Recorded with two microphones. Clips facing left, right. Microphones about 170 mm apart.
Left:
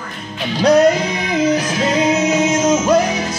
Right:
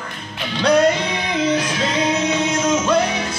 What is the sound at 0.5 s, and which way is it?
Music, 40° left (ahead or behind).